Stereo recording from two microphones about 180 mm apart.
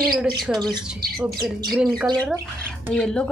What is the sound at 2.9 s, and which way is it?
Speech, 5° left (ahead or behind).